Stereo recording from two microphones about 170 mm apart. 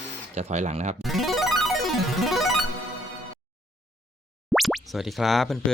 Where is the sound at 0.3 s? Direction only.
40° right (ahead or behind).